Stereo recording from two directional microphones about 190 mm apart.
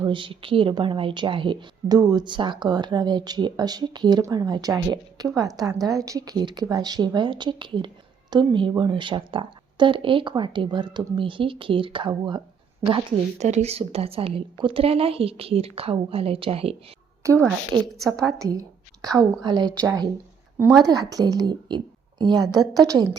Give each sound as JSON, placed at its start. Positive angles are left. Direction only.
{"t": 0.0, "sound": "a woman's voice", "side_deg": -25}
{"t": 17.3, "sound": "a woman's voice", "side_deg": 0}
{"t": 18.3, "sound": "a woman's voice", "side_deg": -20}